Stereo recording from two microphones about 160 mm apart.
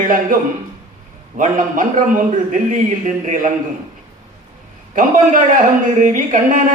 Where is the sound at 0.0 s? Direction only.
60° right (ahead or behind).